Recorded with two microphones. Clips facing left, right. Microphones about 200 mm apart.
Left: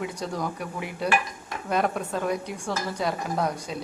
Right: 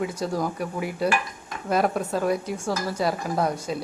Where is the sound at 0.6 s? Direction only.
40° right (ahead or behind).